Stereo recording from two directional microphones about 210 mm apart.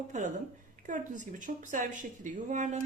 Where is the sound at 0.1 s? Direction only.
35° right (ahead or behind).